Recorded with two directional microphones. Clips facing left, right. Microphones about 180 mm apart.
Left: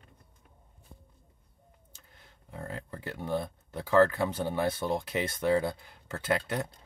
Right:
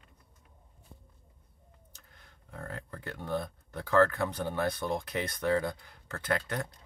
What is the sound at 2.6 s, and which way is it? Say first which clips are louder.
Speech: left 2 dB; 20° left (ahead or behind).